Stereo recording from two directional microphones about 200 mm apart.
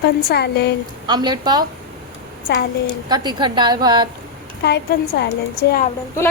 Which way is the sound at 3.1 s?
20° right (ahead or behind).